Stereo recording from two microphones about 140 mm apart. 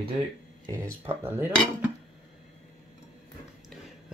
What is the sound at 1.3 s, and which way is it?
Cutlery, 15° right (ahead or behind).